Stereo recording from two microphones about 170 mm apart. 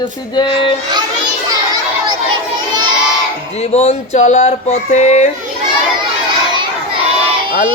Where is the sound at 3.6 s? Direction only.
40° left (ahead or behind).